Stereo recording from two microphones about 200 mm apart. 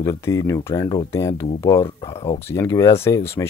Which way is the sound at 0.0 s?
15° left (ahead or behind).